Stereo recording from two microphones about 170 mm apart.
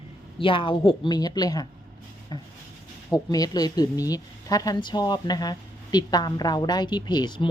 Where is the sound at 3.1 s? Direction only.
20° left (ahead or behind).